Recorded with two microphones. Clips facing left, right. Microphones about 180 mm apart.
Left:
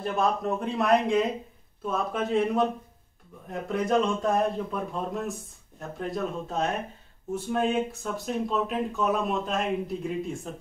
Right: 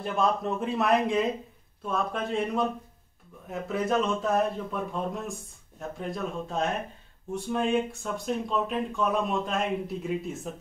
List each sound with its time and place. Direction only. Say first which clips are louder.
0.4 s a man's voice: left 1 dB; centre (ahead or behind)